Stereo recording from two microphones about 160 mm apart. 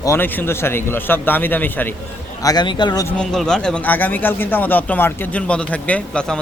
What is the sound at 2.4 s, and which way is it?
Speech, 25° left (ahead or behind).